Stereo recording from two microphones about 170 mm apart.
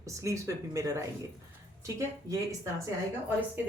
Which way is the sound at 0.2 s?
20° right (ahead or behind).